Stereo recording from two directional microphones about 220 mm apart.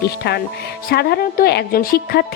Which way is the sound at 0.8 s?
45° left (ahead or behind).